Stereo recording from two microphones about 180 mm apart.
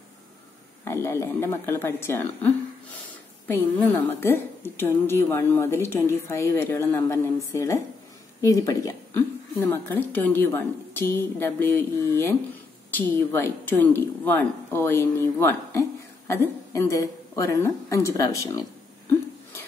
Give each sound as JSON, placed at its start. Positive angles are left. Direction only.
{"t": 0.8, "sound": "a woman's voice", "side_deg": 15}